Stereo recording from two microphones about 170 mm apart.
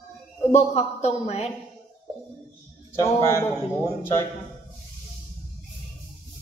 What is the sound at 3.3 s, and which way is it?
Speech, 15° left (ahead or behind).